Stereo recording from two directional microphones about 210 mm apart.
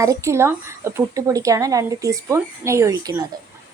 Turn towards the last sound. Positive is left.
turn(degrees=-15)  # may be behind; listen again after turning